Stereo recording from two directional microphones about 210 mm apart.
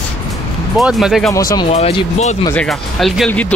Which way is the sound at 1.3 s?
15° left (ahead or behind).